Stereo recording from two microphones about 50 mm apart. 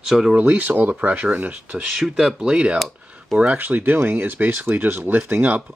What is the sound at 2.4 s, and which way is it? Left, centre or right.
Speech, centre.